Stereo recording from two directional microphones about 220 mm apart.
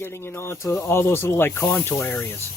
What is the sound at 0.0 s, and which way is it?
Speech, 10° left (ahead or behind).